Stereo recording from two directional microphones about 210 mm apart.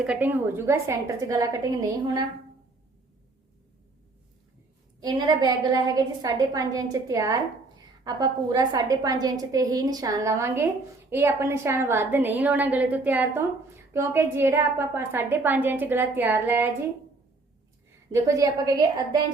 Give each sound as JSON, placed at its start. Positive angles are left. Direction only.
{"t": 0.0, "sound": "a woman's voice", "side_deg": -5}
{"t": 4.9, "sound": "a woman's voice", "side_deg": -20}
{"t": 18.1, "sound": "a woman's voice", "side_deg": -15}